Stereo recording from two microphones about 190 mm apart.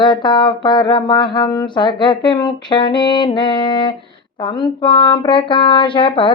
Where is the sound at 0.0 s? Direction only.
25° left (ahead or behind).